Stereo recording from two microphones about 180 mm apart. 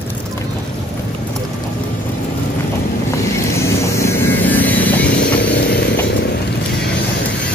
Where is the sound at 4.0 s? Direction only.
15° left (ahead or behind).